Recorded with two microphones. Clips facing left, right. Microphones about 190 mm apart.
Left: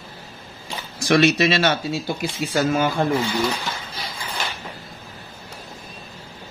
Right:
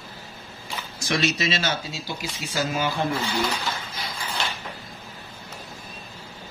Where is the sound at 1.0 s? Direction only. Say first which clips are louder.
Left 8 dB; 60° left (ahead or behind).